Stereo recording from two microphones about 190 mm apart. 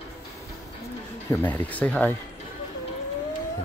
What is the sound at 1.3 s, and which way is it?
Speech, 10° left (ahead or behind).